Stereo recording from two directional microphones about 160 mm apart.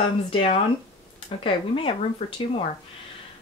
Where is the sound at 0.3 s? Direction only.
35° left (ahead or behind).